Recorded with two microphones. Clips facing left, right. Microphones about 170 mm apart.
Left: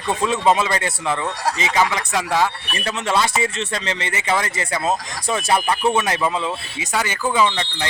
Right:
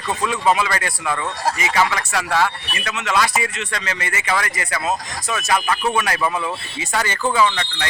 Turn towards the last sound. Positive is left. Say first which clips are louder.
# even
turn(degrees=20)  # may be behind; listen again after turning